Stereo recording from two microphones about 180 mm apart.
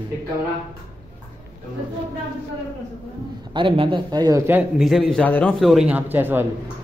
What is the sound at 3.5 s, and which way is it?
Speech, 30° right (ahead or behind).